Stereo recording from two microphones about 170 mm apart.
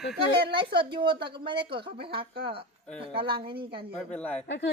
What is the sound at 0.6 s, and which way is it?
A woman's voice, 30° right (ahead or behind).